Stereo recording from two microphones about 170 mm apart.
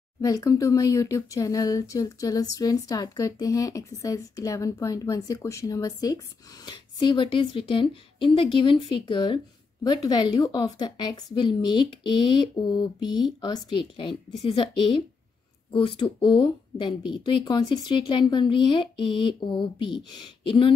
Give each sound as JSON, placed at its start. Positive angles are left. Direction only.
{"t": 0.2, "sound": "speech", "side_deg": 20}